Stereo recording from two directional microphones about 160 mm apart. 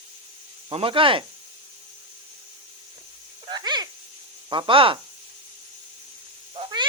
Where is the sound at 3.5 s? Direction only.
25° right (ahead or behind).